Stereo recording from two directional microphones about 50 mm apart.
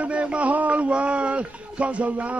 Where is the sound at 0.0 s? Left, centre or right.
Right.